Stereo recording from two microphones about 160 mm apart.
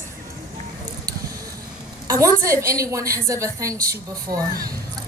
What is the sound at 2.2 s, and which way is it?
A woman's voice, 20° right (ahead or behind).